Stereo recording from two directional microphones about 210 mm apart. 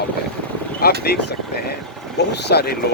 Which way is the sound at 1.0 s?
50° left (ahead or behind).